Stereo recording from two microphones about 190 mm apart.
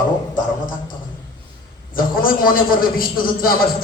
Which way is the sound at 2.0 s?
50° left (ahead or behind).